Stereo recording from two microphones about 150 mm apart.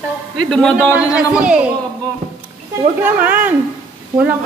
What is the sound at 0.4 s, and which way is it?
A woman's voice, 5° left (ahead or behind).